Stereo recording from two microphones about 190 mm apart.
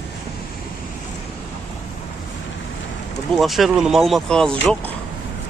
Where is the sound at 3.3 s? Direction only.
Centre (ahead or behind).